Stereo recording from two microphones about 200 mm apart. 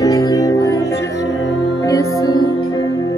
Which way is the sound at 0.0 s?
15° left (ahead or behind).